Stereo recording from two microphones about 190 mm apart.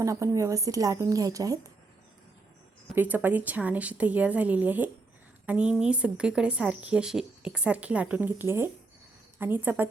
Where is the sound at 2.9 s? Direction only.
10° right (ahead or behind).